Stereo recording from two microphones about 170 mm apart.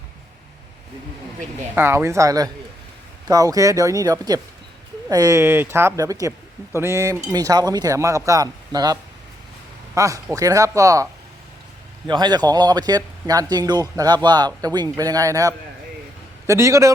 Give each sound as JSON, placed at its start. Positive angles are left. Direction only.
{"t": 1.7, "sound": "a man's voice", "side_deg": -15}